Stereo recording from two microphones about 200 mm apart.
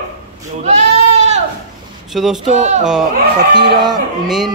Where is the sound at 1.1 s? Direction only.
35° right (ahead or behind).